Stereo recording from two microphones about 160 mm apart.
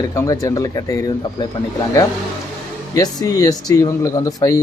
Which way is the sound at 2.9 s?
20° left (ahead or behind).